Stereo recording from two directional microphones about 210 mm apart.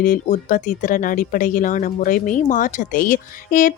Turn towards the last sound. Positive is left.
turn(degrees=40)  # may be behind; listen again after turning